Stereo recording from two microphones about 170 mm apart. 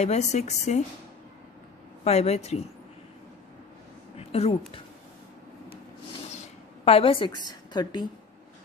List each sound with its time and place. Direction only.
0.0 s a woman's voice: 40° left (ahead or behind)
2.0 s a woman's voice: 40° left (ahead or behind)
4.2 s speech: 35° left (ahead or behind)
6.3 s a sound: 35° left (ahead or behind)